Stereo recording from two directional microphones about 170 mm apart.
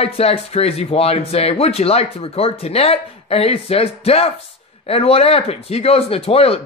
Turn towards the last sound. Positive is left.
turn(degrees=35)  # may be behind; listen again after turning